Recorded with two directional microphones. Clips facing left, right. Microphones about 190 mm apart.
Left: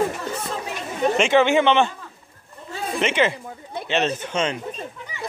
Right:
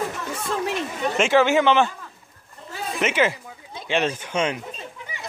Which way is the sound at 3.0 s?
5° right (ahead or behind).